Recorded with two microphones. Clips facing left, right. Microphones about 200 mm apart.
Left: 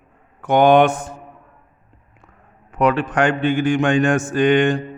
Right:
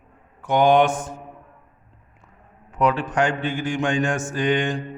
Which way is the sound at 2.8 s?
65° left (ahead or behind).